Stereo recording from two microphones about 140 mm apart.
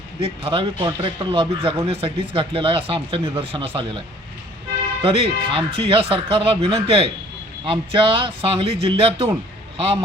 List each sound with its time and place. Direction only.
0.2 s speech: 40° right (ahead or behind)
5.0 s speech: 40° right (ahead or behind)